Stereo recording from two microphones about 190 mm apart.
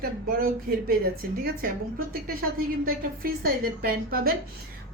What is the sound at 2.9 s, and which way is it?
A woman's voice, 50° right (ahead or behind).